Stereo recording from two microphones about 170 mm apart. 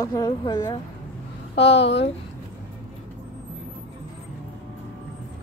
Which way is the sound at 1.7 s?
90° left.